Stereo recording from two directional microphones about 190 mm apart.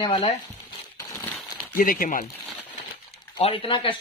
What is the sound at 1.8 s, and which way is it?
Speech, 45° left (ahead or behind).